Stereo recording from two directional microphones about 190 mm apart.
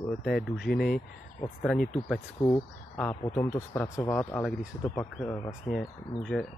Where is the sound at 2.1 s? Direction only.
10° left (ahead or behind).